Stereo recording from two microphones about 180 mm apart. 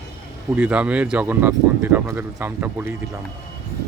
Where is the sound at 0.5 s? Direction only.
5° right (ahead or behind).